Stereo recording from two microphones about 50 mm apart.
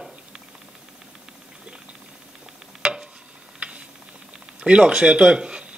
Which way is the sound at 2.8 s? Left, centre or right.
Centre.